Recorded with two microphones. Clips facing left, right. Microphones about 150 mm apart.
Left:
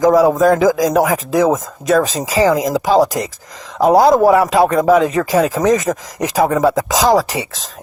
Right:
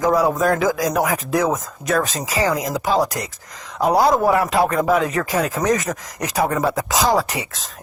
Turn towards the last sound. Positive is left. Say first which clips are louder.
# left 5 dB
turn(degrees=90)